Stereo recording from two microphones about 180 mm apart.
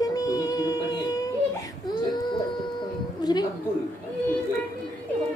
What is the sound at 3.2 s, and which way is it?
Music, 20° left (ahead or behind).